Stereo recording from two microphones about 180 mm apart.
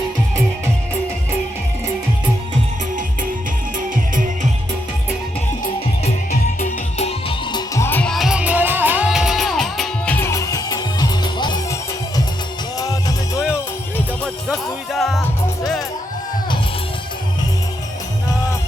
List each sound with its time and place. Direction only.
5.6 s music: 40° left (ahead or behind)
7.3 s music: 20° left (ahead or behind); by 10.2 s centre (ahead or behind)
10.2 s music: 15° left (ahead or behind)
14.4 s music: centre (ahead or behind)